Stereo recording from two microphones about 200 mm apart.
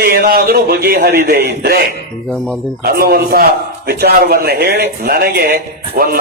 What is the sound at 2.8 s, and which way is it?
A man's voice, 45° right (ahead or behind).